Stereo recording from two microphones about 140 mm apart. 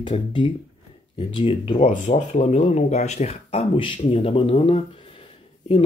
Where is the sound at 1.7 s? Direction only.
55° left (ahead or behind).